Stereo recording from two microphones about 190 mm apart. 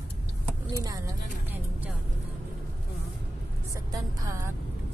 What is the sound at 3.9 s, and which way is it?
Speech, 20° right (ahead or behind).